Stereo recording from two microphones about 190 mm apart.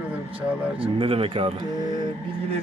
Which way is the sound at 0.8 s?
30° right (ahead or behind).